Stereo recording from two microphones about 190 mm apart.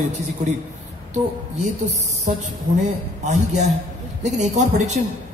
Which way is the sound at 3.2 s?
40° right (ahead or behind).